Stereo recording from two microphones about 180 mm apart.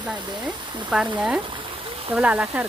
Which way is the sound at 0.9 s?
5° right (ahead or behind).